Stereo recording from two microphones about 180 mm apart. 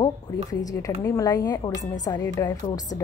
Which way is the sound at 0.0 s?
20° left (ahead or behind).